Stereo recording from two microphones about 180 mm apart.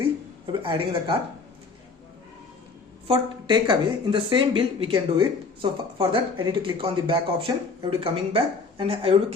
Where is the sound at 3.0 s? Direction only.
25° right (ahead or behind).